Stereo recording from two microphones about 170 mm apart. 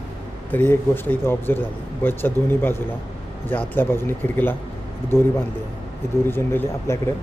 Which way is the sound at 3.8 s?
15° left (ahead or behind).